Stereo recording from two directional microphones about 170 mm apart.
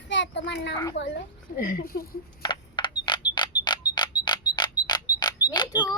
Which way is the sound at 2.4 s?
25° left (ahead or behind).